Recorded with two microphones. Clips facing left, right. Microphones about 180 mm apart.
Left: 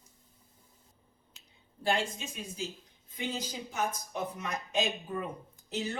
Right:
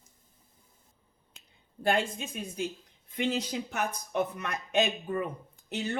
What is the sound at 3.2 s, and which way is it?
Speech, 65° right (ahead or behind).